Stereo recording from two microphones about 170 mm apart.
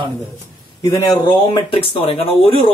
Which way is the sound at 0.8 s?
20° left (ahead or behind).